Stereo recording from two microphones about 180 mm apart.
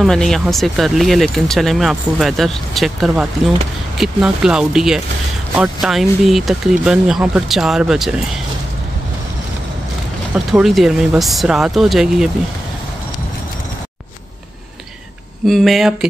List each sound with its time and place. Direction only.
0.0 s speech: centre (ahead or behind)
10.3 s speech: centre (ahead or behind)
15.4 s speech: centre (ahead or behind)